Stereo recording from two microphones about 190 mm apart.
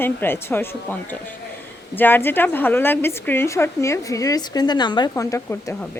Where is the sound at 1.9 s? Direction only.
10° left (ahead or behind).